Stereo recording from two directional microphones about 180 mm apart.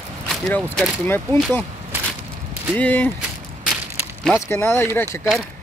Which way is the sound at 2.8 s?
10° left (ahead or behind).